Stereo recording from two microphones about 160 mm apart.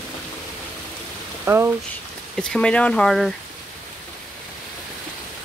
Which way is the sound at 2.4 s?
5° left (ahead or behind).